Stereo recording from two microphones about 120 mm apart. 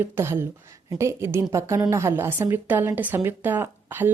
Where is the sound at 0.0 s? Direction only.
20° right (ahead or behind).